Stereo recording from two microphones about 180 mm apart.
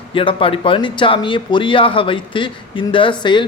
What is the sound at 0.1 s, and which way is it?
Speech, 30° left (ahead or behind).